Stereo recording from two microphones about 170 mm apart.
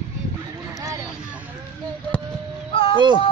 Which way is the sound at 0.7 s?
20° right (ahead or behind).